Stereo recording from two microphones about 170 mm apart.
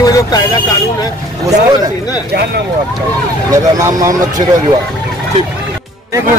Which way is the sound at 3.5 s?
20° right (ahead or behind).